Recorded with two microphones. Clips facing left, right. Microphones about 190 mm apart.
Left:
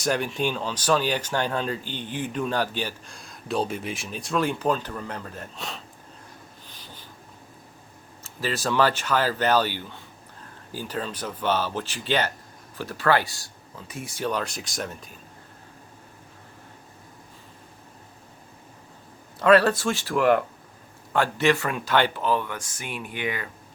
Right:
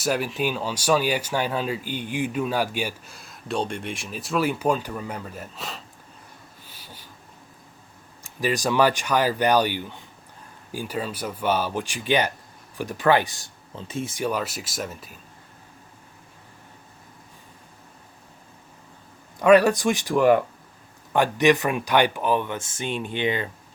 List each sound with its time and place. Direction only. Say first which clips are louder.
0.0 s speech: right 1 dB; 5° right (ahead or behind)
6.7 s train: right 2 dB; 10° right (ahead or behind)
8.2 s speech: right 4 dB; 15° right (ahead or behind)
14.3 s speech: left 3 dB; 5° right (ahead or behind)
19.4 s speech: right 2 dB; 15° right (ahead or behind)
20.1 s speech: right 2 dB; centre (ahead or behind)
21.1 s speech: right 3 dB; 15° right (ahead or behind)